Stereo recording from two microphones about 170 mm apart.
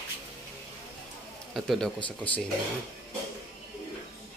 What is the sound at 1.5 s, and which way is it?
Speech, centre (ahead or behind).